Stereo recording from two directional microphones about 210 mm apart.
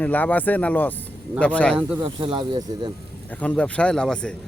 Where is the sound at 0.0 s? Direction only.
10° left (ahead or behind).